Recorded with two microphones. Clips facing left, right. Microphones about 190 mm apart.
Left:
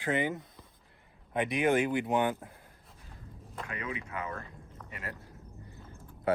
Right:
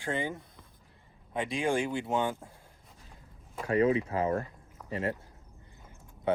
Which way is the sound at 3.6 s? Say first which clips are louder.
Right 15 dB; 35° right (ahead or behind).